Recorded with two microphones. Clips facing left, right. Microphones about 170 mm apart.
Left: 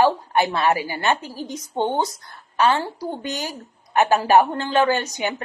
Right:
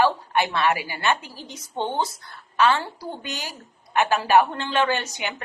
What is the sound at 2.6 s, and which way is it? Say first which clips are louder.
A woman's voice: left 1 dB; 40° left (ahead or behind).